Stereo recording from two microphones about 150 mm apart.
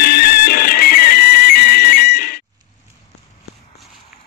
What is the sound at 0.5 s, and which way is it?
Music, 90° left.